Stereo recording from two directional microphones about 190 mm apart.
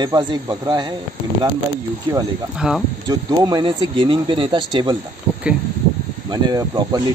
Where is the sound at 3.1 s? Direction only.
20° right (ahead or behind).